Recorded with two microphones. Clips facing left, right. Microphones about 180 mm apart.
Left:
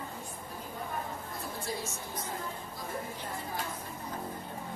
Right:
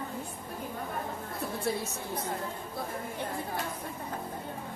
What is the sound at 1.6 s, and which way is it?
Speech, 65° right (ahead or behind).